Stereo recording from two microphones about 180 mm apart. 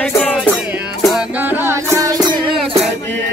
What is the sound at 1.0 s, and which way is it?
Music, 5° right (ahead or behind).